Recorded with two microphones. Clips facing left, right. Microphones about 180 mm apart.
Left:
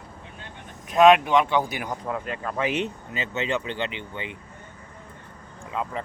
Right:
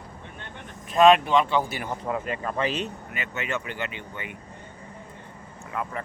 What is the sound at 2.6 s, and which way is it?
Speech, 20° left (ahead or behind).